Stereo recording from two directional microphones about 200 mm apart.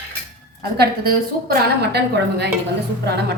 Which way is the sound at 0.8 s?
50° right (ahead or behind).